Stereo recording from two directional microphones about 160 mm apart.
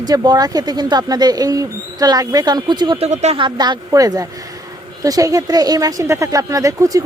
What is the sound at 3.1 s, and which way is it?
Speech, 45° right (ahead or behind).